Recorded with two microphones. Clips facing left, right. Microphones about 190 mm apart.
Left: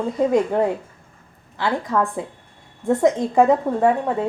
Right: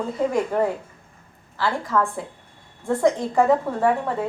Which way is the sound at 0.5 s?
20° left (ahead or behind).